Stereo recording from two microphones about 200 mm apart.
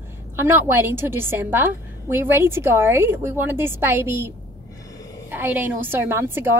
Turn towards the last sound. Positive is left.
turn(degrees=-10)  # may be behind; listen again after turning